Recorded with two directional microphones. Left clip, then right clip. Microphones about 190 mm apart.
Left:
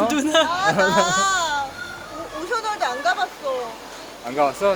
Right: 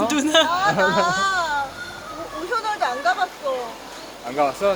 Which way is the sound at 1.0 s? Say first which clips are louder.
Left 1 dB; 20° left (ahead or behind).